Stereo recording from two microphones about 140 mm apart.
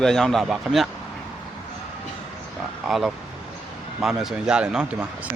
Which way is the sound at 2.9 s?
5° right (ahead or behind).